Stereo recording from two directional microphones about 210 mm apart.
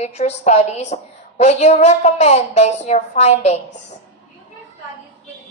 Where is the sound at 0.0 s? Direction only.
30° left (ahead or behind).